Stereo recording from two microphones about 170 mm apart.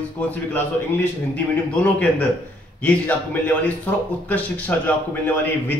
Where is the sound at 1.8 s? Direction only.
10° left (ahead or behind).